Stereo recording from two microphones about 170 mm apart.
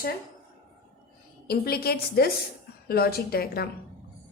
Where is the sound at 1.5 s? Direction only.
65° left (ahead or behind).